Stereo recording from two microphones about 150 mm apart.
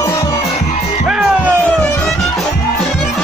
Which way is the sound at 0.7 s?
45° left (ahead or behind).